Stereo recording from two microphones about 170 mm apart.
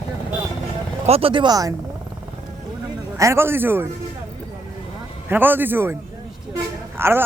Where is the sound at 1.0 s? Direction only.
35° right (ahead or behind).